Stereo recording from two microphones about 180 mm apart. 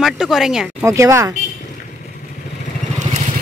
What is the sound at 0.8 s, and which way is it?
Speech, 15° right (ahead or behind).